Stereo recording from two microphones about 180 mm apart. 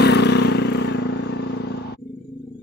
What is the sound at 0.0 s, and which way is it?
Vehicle, 70° left (ahead or behind).